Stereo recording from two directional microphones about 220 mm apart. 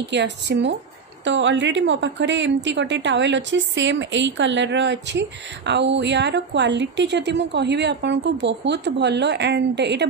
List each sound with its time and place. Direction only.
0.0 s a woman's voice: 50° right (ahead or behind)